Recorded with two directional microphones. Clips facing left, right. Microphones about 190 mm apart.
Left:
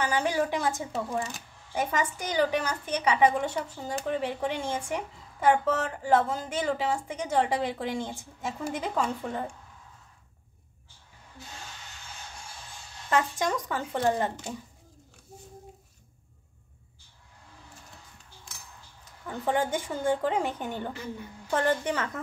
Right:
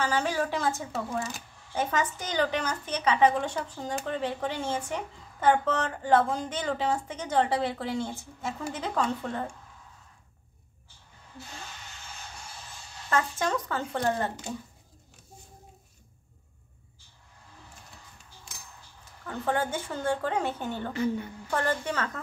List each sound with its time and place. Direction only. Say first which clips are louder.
0.0 s a woman's voice: left 1 dB; 15° left (ahead or behind)
13.1 s a woman's voice: left 1 dB; 15° left (ahead or behind)
19.2 s a woman's voice: left 1 dB; 15° left (ahead or behind)